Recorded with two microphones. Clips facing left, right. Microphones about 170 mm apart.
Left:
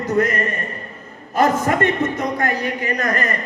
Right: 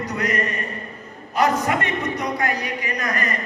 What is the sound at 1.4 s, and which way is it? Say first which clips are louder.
A man's voice: left 3 dB; 50° left (ahead or behind).